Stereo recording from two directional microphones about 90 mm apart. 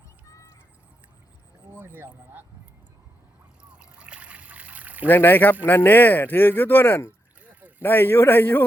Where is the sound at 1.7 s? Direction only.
25° right (ahead or behind).